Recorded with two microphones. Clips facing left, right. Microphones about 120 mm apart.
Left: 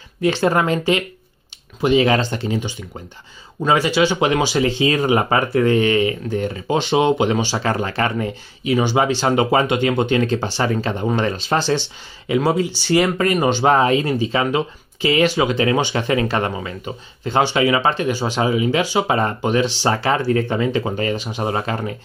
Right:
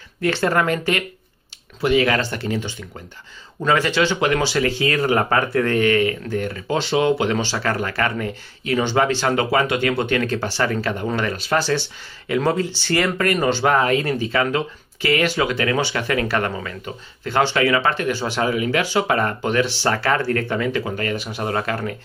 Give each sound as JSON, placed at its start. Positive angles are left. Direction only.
{"t": 0.2, "sound": "speech", "side_deg": 15}
{"t": 12.3, "sound": "speech", "side_deg": 10}